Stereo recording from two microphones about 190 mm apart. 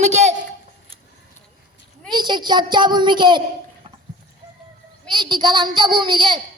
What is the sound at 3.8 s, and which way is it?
Clip-clop, 30° right (ahead or behind).